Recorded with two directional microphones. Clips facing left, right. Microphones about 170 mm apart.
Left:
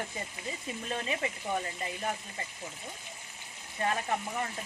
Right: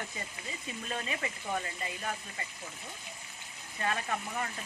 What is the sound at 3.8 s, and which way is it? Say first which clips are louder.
Speech: left 3 dB; 30° left (ahead or behind).